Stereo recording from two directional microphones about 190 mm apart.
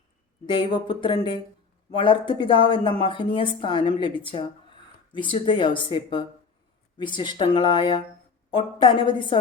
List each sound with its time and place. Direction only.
0.4 s speech: 25° left (ahead or behind)